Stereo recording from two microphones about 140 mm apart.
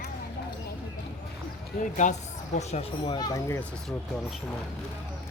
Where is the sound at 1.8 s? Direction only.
65° left (ahead or behind).